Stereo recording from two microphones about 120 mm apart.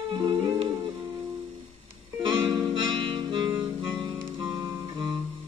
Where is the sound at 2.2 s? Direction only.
40° right (ahead or behind).